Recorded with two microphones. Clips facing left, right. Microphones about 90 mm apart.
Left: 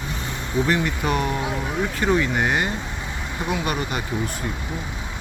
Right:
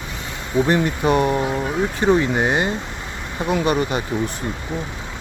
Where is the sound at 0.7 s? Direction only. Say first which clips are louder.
Right 5 dB; 35° right (ahead or behind).